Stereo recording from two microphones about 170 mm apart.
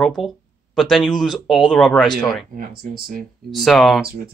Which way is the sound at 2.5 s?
60° right (ahead or behind).